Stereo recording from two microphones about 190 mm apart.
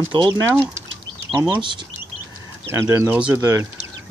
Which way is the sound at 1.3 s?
25° right (ahead or behind).